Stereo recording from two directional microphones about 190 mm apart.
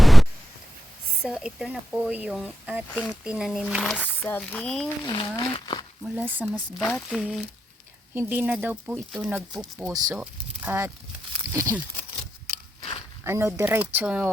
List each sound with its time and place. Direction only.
0.0 s a sound: centre (ahead or behind)
1.2 s speech: 5° right (ahead or behind)
2.9 s speech: 5° left (ahead or behind)
5.0 s speech: 25° left (ahead or behind)
6.0 s speech: 10° right (ahead or behind)
6.8 s speech: 5° left (ahead or behind)
9.8 s speech: 15° right (ahead or behind)
13.2 s speech: 15° right (ahead or behind)